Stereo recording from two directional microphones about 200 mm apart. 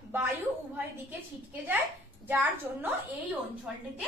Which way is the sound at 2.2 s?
10° right (ahead or behind).